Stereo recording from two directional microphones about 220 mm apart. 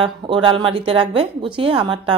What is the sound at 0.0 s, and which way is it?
A woman's voice, 20° right (ahead or behind).